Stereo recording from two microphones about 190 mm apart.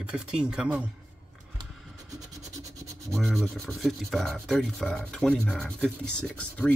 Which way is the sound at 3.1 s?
Centre (ahead or behind).